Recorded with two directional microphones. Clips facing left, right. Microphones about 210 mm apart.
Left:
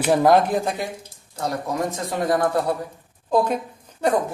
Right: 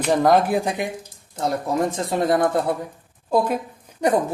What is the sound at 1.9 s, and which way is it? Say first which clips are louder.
Speech: right 2 dB; 25° right (ahead or behind).